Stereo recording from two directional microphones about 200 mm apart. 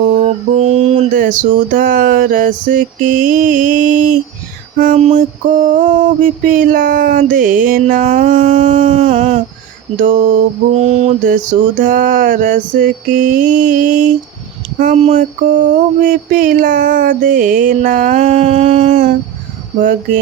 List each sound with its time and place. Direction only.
0.1 s mantra: 35° right (ahead or behind)
4.8 s music: 40° right (ahead or behind)